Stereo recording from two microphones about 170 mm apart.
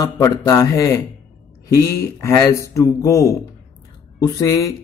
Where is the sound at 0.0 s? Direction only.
20° left (ahead or behind).